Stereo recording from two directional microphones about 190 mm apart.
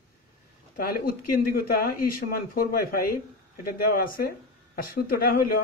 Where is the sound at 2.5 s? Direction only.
50° left (ahead or behind).